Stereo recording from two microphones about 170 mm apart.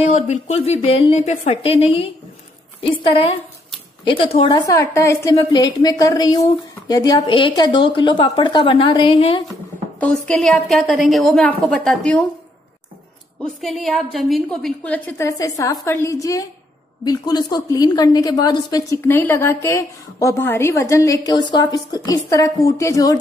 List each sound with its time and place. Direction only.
0.0 s a woman's voice: 40° left (ahead or behind)
9.9 s a woman's voice: 5° left (ahead or behind)
13.4 s a woman's voice: centre (ahead or behind); by 23.1 s 20° left (ahead or behind)